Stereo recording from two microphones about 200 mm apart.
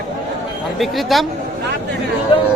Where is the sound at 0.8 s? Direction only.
Centre (ahead or behind).